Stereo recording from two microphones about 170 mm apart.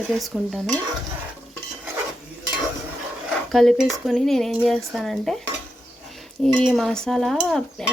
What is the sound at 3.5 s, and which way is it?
Stir, centre (ahead or behind).